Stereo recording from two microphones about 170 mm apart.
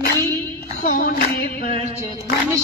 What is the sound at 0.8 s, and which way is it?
Female singing, 60° left (ahead or behind).